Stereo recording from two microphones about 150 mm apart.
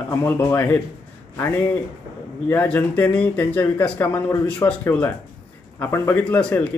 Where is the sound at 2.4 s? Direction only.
10° left (ahead or behind).